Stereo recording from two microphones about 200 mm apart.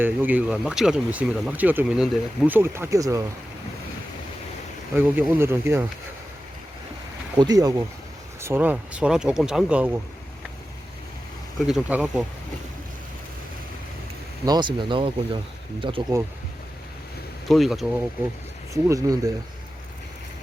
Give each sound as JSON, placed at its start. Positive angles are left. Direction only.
{"t": 0.0, "sound": "speech", "side_deg": -10}
{"t": 4.9, "sound": "speech", "side_deg": -10}
{"t": 7.3, "sound": "speech", "side_deg": -20}
{"t": 11.6, "sound": "speech", "side_deg": -5}
{"t": 14.4, "sound": "speech", "side_deg": -20}
{"t": 17.5, "sound": "speech", "side_deg": 0}
{"t": 18.7, "sound": "speech", "side_deg": -15}